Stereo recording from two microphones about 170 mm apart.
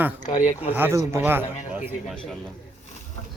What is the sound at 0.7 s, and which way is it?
Speech, 15° right (ahead or behind).